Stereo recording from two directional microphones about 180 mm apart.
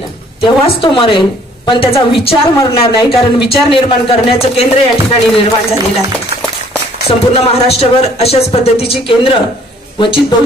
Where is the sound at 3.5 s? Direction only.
30° left (ahead or behind).